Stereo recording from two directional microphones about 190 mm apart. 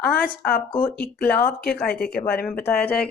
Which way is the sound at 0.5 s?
5° left (ahead or behind).